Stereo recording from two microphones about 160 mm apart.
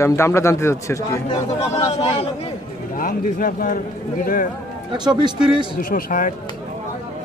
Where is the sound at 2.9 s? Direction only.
60° left (ahead or behind).